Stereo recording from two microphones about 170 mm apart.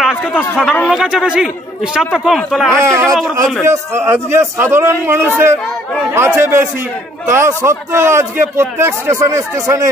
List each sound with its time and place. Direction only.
0.0 s a sound: centre (ahead or behind)
0.4 s speech: 5° left (ahead or behind)
2.7 s a man's voice: 15° right (ahead or behind)